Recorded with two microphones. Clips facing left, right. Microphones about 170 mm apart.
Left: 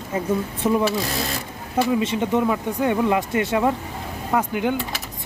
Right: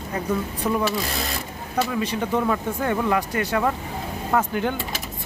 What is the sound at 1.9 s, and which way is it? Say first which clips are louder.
Speech: left 5 dB; 20° left (ahead or behind).